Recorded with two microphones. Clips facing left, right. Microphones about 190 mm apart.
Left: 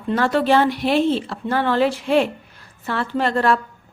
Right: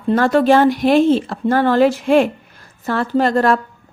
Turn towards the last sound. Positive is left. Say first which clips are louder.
# right 4 dB
turn(degrees=-40)  # may be behind; listen again after turning